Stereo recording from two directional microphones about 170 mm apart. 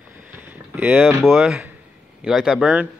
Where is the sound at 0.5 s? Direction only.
10° right (ahead or behind).